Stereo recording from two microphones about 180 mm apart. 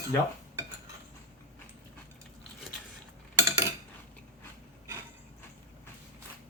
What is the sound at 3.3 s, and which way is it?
Cutlery, 20° right (ahead or behind).